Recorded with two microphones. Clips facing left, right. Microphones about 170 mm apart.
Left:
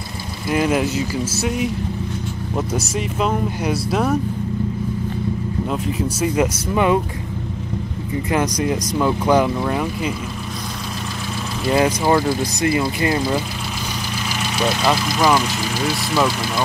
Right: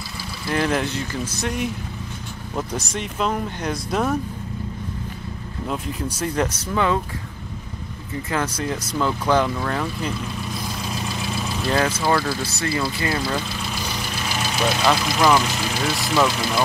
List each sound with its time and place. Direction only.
0.5 s speech: 10° left (ahead or behind)
5.7 s speech: 5° left (ahead or behind)
8.3 s speech: 15° left (ahead or behind)
11.6 s speech: 15° left (ahead or behind)
14.9 s speech: 5° left (ahead or behind)